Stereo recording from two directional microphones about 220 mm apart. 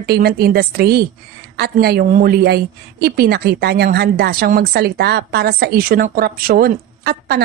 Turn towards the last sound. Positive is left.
turn(degrees=-45)  # may be behind; listen again after turning